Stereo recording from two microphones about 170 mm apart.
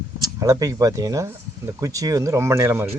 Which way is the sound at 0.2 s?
20° right (ahead or behind).